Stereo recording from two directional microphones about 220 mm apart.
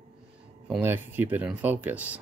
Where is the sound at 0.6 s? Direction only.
5° right (ahead or behind).